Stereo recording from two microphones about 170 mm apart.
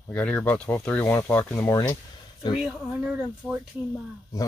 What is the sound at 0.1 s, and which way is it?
Speech, 5° left (ahead or behind).